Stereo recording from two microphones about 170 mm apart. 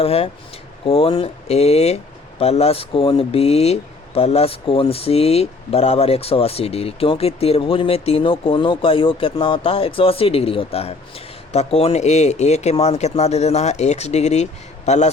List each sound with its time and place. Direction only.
0.0 s a man's voice: 35° left (ahead or behind)